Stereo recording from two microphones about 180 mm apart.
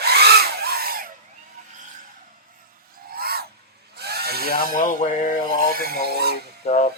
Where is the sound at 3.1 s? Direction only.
60° right (ahead or behind).